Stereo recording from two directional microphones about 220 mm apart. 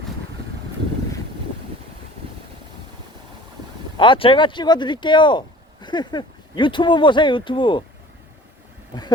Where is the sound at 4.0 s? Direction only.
25° left (ahead or behind).